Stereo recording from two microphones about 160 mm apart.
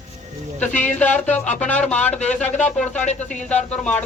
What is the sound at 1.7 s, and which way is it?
A man's voice, 10° left (ahead or behind).